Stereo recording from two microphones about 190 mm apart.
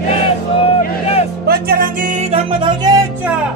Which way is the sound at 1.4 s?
55° right (ahead or behind).